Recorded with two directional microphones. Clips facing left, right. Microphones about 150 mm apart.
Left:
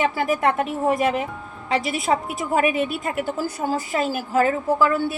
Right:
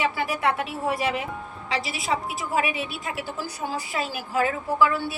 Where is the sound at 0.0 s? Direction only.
45° left (ahead or behind).